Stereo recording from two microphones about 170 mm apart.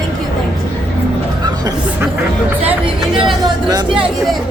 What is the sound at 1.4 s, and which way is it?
Music, 25° right (ahead or behind).